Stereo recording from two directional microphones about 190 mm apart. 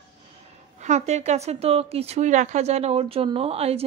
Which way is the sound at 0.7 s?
40° right (ahead or behind).